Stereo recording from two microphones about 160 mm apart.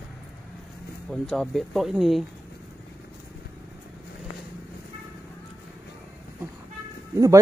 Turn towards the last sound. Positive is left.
turn(degrees=-20)  # may be behind; listen again after turning